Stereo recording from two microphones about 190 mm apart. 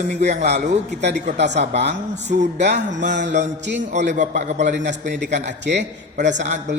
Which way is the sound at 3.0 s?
70° right (ahead or behind).